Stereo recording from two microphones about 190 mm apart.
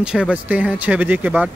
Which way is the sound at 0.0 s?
5° right (ahead or behind).